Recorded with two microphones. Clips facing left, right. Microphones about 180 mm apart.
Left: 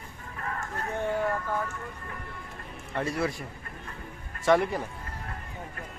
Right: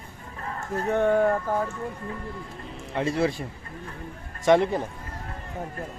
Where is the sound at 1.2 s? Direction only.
35° right (ahead or behind).